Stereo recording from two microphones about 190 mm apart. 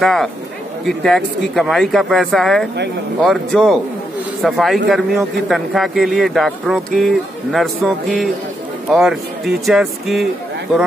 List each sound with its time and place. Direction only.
0.0 s speech: centre (ahead or behind)